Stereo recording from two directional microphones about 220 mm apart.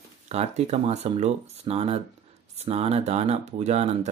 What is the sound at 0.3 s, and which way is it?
Speech, 30° right (ahead or behind).